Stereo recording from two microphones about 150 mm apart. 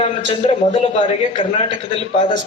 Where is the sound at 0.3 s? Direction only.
30° left (ahead or behind).